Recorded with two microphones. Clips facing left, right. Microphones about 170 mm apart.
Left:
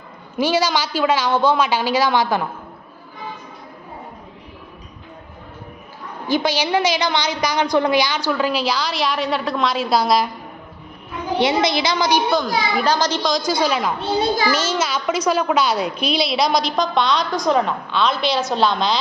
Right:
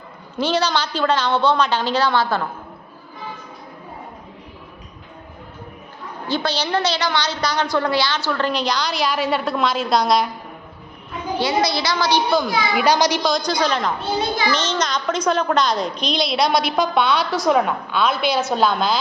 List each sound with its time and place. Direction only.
0.3 s a woman's voice: 10° left (ahead or behind)
6.2 s a woman's voice: 10° left (ahead or behind)
11.3 s a woman's voice: 20° left (ahead or behind)
12.3 s a child's voice: 10° right (ahead or behind)
13.3 s a woman's voice: 5° left (ahead or behind)